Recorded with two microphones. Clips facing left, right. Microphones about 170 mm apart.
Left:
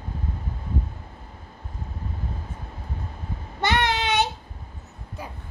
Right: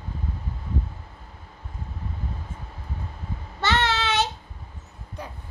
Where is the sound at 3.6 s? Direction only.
15° left (ahead or behind).